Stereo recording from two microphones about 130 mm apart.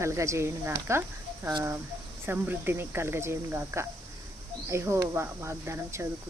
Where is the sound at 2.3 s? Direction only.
15° right (ahead or behind).